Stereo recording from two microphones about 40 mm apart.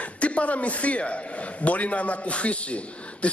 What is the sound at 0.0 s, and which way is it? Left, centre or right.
A man's voice, left.